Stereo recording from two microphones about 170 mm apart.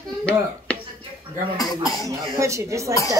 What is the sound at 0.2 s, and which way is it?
Chopping, 5° left (ahead or behind).